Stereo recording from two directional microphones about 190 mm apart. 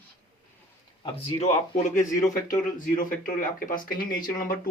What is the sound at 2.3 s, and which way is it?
Speech, 45° left (ahead or behind).